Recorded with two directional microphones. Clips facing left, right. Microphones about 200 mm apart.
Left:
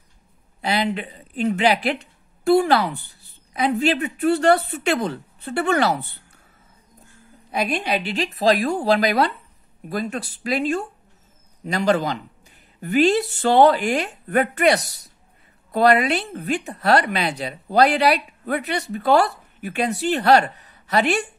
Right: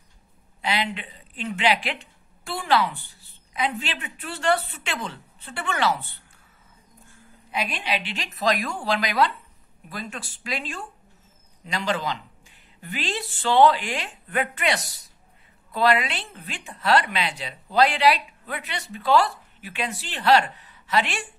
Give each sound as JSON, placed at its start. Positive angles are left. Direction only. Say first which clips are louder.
{"t": 0.6, "sound": "a sound", "louder": "left 4 dB", "side_deg": 40}
{"t": 0.9, "sound": "a woman's voice", "louder": "left 10 dB", "side_deg": 40}
{"t": 7.5, "sound": "a woman's voice", "louder": "left 6 dB", "side_deg": 45}